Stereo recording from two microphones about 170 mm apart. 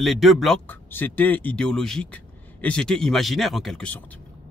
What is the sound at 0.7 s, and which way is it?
Speech, 10° left (ahead or behind).